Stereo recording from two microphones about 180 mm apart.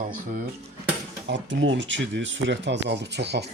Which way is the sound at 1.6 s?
90° right.